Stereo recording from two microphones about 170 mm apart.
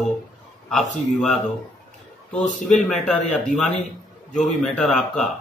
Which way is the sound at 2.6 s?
Centre (ahead or behind).